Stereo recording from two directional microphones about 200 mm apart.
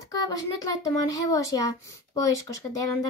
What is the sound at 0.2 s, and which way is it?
A child's voice, 20° left (ahead or behind).